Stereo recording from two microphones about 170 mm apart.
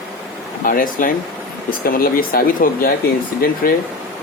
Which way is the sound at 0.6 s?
55° left (ahead or behind).